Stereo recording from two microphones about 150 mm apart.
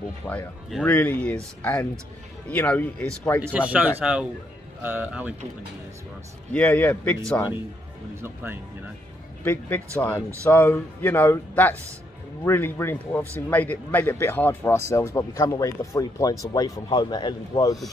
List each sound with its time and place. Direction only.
0.2 s speech: 15° left (ahead or behind)
3.5 s speech: 10° right (ahead or behind)
6.5 s speech: 10° left (ahead or behind)
9.4 s speech: 15° left (ahead or behind)